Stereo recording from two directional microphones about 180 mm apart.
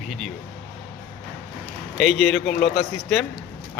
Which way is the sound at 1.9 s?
Centre (ahead or behind).